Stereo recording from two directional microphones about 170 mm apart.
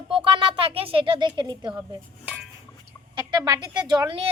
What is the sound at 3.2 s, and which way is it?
Speech, 25° right (ahead or behind).